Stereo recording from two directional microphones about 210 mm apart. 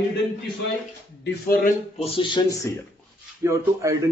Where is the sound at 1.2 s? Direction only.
45° left (ahead or behind).